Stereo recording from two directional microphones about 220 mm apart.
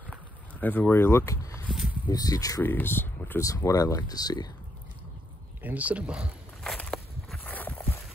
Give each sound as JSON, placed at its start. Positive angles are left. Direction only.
{"t": 0.6, "sound": "speech", "side_deg": 10}
{"t": 1.7, "sound": "a sound", "side_deg": -5}
{"t": 2.0, "sound": "speech", "side_deg": 15}
{"t": 5.6, "sound": "walk", "side_deg": -5}